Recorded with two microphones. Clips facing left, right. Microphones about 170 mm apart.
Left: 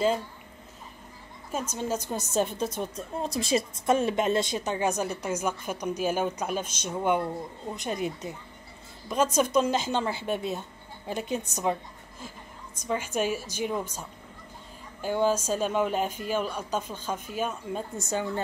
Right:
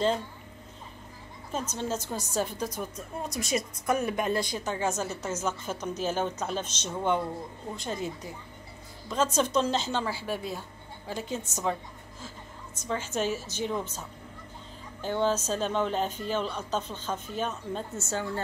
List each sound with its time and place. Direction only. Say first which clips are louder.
1.5 s a woman's voice: left 2 dB; 10° left (ahead or behind)
12.7 s a woman's voice: left 2 dB; 15° left (ahead or behind)